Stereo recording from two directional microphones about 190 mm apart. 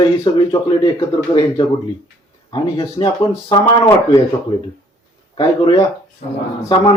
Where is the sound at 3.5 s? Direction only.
15° left (ahead or behind).